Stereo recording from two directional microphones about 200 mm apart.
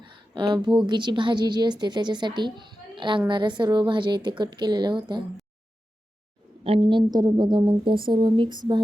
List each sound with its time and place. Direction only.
0.0 s a woman's voice: 25° right (ahead or behind)
6.7 s a woman's voice: 25° right (ahead or behind)